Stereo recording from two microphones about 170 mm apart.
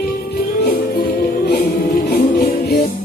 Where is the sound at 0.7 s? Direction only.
60° left (ahead or behind).